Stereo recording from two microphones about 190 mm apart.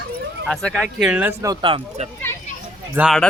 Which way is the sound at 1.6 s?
25° right (ahead or behind).